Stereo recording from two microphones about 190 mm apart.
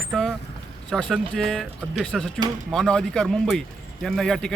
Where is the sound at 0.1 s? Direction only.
Centre (ahead or behind).